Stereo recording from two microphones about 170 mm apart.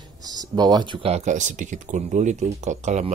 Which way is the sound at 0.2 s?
25° right (ahead or behind).